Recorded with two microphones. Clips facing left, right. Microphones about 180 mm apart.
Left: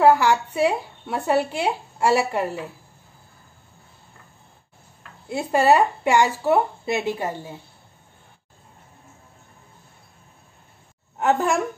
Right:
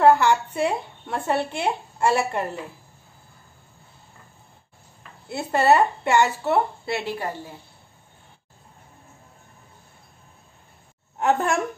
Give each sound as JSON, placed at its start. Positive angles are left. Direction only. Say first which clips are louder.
{"t": 0.0, "sound": "a woman's voice", "louder": "even", "side_deg": 10}
{"t": 5.3, "sound": "a woman's voice", "louder": "left 1 dB", "side_deg": 10}
{"t": 11.1, "sound": "a woman's voice", "louder": "left 1 dB", "side_deg": 0}